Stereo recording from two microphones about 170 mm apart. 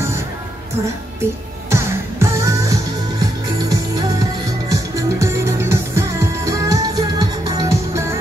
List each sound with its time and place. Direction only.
1.7 s music: 15° right (ahead or behind)